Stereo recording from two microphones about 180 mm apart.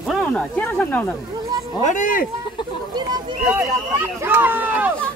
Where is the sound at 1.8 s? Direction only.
45° left (ahead or behind).